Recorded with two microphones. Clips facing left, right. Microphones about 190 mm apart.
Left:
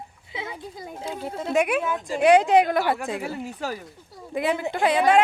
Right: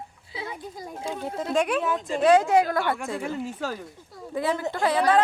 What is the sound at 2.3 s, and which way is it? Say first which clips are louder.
Speech: left 2 dB; 15° left (ahead or behind).